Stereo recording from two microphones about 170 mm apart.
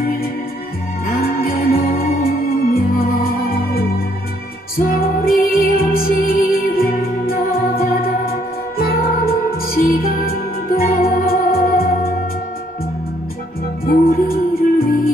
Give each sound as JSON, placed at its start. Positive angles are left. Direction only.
{"t": 1.0, "sound": "music", "side_deg": 60}
{"t": 4.7, "sound": "music", "side_deg": 60}
{"t": 13.8, "sound": "music", "side_deg": 60}